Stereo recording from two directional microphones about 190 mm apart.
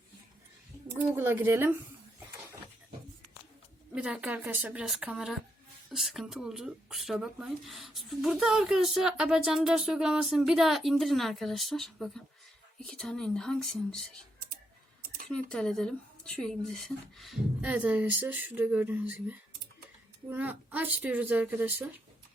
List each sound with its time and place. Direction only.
1.1 s speech: 10° right (ahead or behind)
3.9 s speech: 5° right (ahead or behind)
15.3 s speech: 5° left (ahead or behind)